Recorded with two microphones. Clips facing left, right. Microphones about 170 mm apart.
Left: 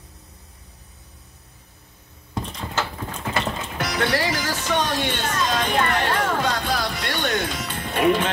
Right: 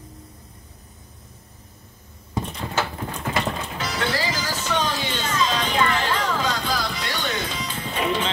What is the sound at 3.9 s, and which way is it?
Music, 65° left (ahead or behind).